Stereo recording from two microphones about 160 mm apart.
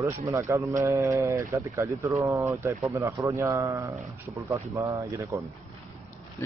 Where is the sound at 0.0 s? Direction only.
20° right (ahead or behind).